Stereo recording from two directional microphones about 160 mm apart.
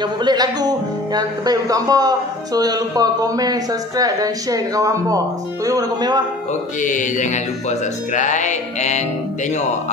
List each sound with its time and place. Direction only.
0.0 s speech: 25° right (ahead or behind)
6.8 s music: 50° left (ahead or behind)